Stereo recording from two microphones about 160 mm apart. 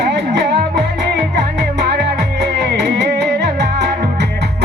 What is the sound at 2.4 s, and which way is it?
Music, 90° right.